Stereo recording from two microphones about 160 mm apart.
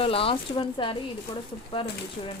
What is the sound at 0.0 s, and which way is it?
Speech, 35° left (ahead or behind).